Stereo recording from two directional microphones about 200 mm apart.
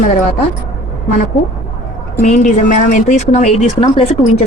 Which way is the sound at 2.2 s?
40° left (ahead or behind).